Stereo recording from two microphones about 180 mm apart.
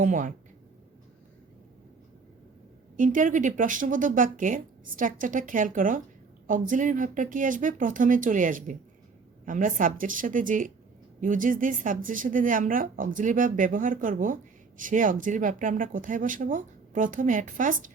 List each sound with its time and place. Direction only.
0.0 s speech: 45° right (ahead or behind)
3.0 s speech: 45° right (ahead or behind)